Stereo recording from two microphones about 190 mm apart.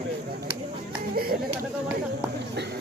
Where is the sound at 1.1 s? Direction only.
50° right (ahead or behind).